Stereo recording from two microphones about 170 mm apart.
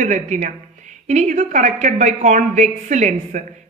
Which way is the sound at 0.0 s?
45° right (ahead or behind).